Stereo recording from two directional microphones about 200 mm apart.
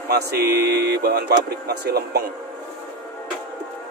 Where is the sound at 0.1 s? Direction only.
50° right (ahead or behind).